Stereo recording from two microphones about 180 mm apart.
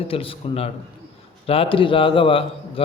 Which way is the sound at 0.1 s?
30° left (ahead or behind).